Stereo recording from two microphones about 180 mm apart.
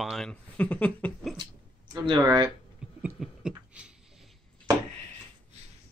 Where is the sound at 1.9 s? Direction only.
25° right (ahead or behind).